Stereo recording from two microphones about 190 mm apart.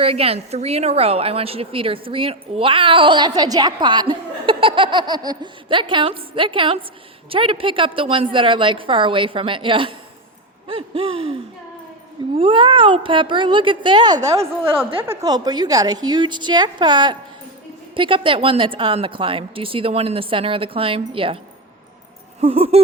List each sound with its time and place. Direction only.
0.0 s a woman's voice: 30° right (ahead or behind)
12.4 s a woman's voice: 25° right (ahead or behind)
14.6 s a woman's voice: 10° right (ahead or behind); by 21.3 s 30° right (ahead or behind)
22.4 s a woman's voice: 30° right (ahead or behind)